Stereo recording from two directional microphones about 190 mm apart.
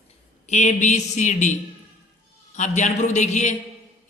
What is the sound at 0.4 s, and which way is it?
A man's voice, 35° left (ahead or behind).